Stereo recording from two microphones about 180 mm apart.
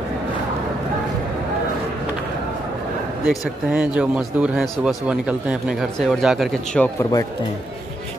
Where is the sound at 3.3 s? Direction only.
5° right (ahead or behind).